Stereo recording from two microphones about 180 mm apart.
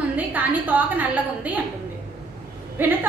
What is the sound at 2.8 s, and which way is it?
Speech, 10° right (ahead or behind).